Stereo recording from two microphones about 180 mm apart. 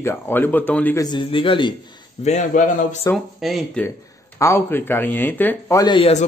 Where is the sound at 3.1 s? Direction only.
Centre (ahead or behind).